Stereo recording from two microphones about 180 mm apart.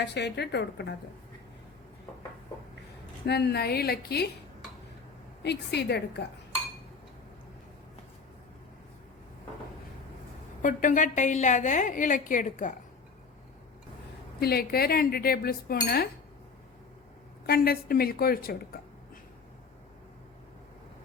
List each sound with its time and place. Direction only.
0.0 s a woman's voice: 70° left (ahead or behind)
3.2 s cutlery: 65° left (ahead or behind)
5.4 s a woman's voice: 65° left (ahead or behind)
10.6 s a woman's voice: 45° left (ahead or behind)
14.3 s cutlery: 60° left (ahead or behind)
17.4 s a woman's voice: 60° left (ahead or behind)